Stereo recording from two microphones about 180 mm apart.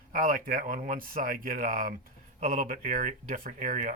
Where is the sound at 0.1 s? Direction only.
50° right (ahead or behind).